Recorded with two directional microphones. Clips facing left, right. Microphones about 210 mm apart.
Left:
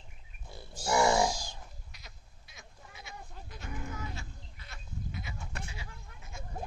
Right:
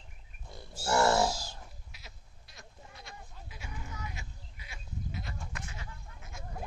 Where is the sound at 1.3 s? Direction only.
5° right (ahead or behind).